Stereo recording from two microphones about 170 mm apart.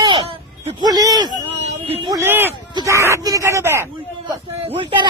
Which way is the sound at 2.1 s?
15° right (ahead or behind).